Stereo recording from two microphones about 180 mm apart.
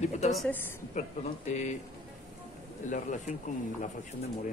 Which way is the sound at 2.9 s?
45° left (ahead or behind).